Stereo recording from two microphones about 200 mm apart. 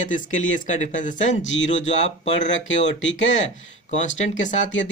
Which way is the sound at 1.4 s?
70° left (ahead or behind).